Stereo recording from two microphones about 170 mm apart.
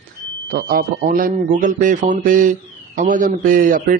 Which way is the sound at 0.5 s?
60° right (ahead or behind).